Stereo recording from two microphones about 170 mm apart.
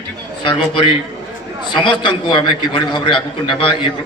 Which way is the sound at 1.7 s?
25° left (ahead or behind).